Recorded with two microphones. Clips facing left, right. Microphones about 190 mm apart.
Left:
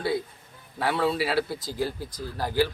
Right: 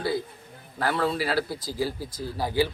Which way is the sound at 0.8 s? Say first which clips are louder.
Left 1 dB; centre (ahead or behind).